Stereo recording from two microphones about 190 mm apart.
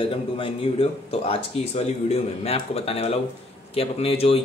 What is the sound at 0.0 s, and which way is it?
Speech, 30° left (ahead or behind).